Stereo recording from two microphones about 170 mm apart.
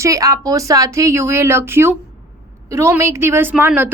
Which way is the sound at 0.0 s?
20° right (ahead or behind).